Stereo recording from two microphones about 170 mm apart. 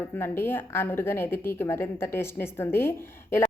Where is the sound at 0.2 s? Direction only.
15° left (ahead or behind).